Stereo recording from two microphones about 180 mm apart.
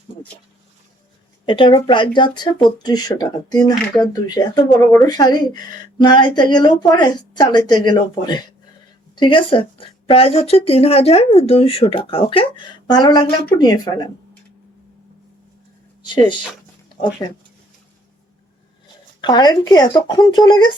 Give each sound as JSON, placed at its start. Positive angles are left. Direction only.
{"t": 1.5, "sound": "a woman's voice", "side_deg": 30}
{"t": 19.2, "sound": "a woman's voice", "side_deg": 25}